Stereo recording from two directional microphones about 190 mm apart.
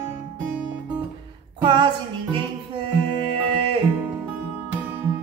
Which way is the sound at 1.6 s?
25° right (ahead or behind).